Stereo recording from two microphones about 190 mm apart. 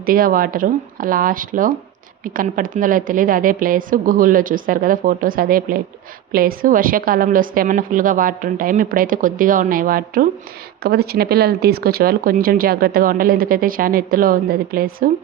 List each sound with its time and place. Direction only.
0.0 s speech: 50° right (ahead or behind)